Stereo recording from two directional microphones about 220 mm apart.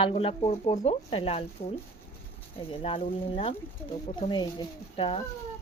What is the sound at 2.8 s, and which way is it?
Speech, 25° left (ahead or behind).